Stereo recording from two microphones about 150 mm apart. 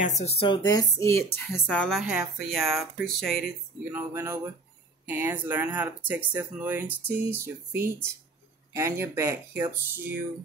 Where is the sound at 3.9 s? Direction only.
15° right (ahead or behind).